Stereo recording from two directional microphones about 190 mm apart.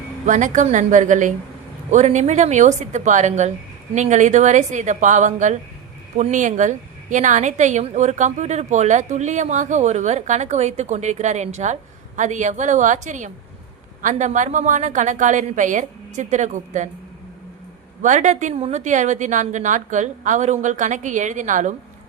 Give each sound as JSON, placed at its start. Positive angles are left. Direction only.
{"t": 0.3, "sound": "a woman's voice", "side_deg": -40}
{"t": 18.0, "sound": "a woman's voice", "side_deg": -40}